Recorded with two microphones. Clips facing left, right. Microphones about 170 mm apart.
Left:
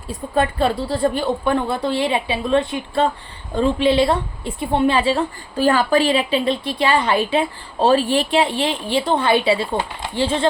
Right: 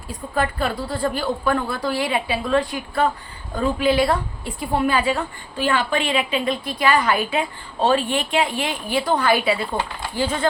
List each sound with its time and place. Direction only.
0.1 s a woman's voice: 25° left (ahead or behind)